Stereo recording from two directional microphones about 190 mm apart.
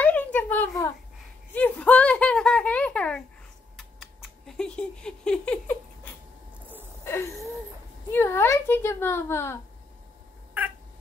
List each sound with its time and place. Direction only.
0.0 s a sound: 10° left (ahead or behind)
1.5 s speech: 10° left (ahead or behind)
3.7 s typing: centre (ahead or behind)
7.1 s wheeze: 15° left (ahead or behind)
8.1 s speech: 10° left (ahead or behind)